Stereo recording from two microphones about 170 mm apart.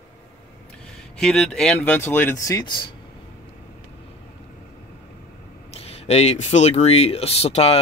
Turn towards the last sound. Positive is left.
turn(degrees=35)  # may be behind; listen again after turning